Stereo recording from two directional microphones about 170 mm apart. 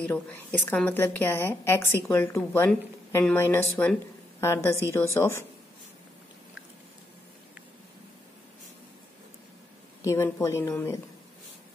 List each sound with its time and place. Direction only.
0.0 s a woman's voice: 10° left (ahead or behind)
10.0 s a woman's voice: 15° left (ahead or behind)